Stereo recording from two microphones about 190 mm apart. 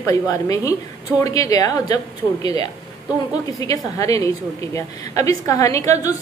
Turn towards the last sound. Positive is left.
turn(degrees=15)  # may be behind; listen again after turning